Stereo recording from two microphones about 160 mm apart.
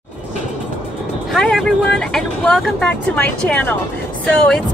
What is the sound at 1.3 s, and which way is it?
Speech, 5° left (ahead or behind).